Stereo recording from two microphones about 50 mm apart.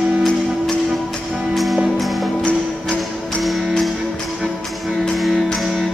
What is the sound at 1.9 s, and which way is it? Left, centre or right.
Music, centre.